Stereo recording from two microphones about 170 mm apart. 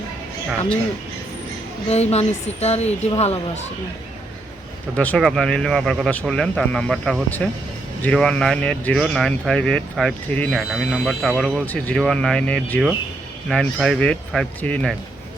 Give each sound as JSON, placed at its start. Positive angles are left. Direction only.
{"t": 1.9, "sound": "a woman's voice", "side_deg": 40}
{"t": 4.9, "sound": "speech", "side_deg": 5}